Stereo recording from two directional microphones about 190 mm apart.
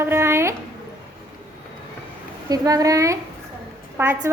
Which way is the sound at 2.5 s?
20° right (ahead or behind).